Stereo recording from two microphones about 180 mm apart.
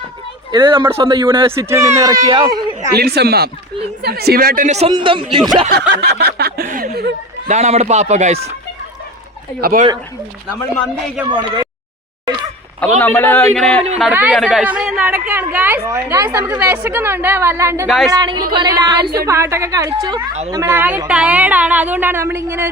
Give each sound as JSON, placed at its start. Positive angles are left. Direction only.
{"t": 0.5, "sound": "a woman's voice", "side_deg": -25}
{"t": 1.5, "sound": "a woman's voice", "side_deg": -15}
{"t": 2.2, "sound": "a woman's voice", "side_deg": -30}
{"t": 2.9, "sound": "speech", "side_deg": -60}
{"t": 4.9, "sound": "a woman's voice", "side_deg": -25}
{"t": 5.6, "sound": "snicker", "side_deg": -65}
{"t": 7.4, "sound": "speech", "side_deg": -40}
{"t": 9.6, "sound": "speech", "side_deg": -55}
{"t": 11.3, "sound": "a woman's voice", "side_deg": -25}
{"t": 13.0, "sound": "a man's voice", "side_deg": 10}
{"t": 14.0, "sound": "a woman's voice", "side_deg": -5}
{"t": 17.8, "sound": "a woman's voice", "side_deg": 0}
{"t": 18.1, "sound": "a woman's voice", "side_deg": -20}